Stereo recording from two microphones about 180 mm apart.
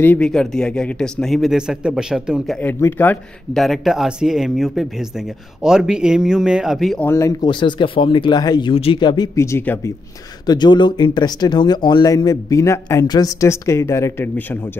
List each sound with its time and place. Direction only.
0.0 s speech: 10° left (ahead or behind)
2.6 s speech: 10° left (ahead or behind)
7.1 s speech: 15° left (ahead or behind)